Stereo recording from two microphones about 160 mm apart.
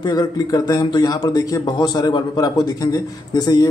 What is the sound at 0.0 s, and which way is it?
A man's voice, 25° left (ahead or behind).